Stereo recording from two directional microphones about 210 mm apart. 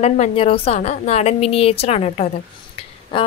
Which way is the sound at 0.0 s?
30° left (ahead or behind).